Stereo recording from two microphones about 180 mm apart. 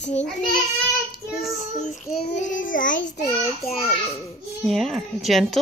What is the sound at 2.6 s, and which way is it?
Child singing, 50° left (ahead or behind).